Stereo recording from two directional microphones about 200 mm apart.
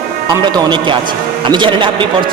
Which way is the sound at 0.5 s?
25° right (ahead or behind).